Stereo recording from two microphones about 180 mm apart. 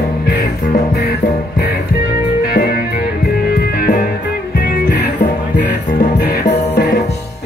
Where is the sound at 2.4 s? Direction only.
60° left (ahead or behind).